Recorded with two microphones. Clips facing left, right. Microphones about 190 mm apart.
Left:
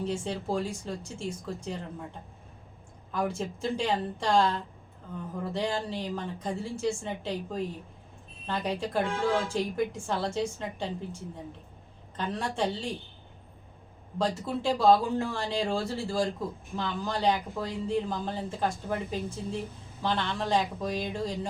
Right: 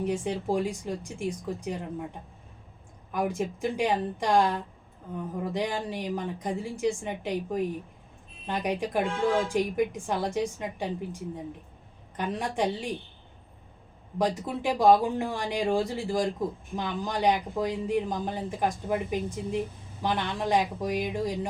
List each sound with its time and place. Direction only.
0.0 s speech: 15° right (ahead or behind)
3.1 s speech: 15° right (ahead or behind)
14.2 s speech: 15° right (ahead or behind)